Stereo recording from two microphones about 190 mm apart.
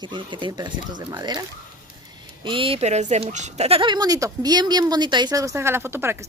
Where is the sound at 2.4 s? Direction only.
30° right (ahead or behind); by 6.2 s 10° right (ahead or behind).